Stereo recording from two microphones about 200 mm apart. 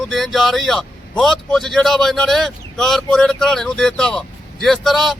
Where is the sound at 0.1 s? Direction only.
Centre (ahead or behind).